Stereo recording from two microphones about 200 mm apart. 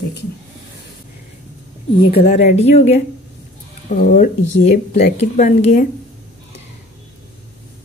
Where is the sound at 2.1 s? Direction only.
35° left (ahead or behind).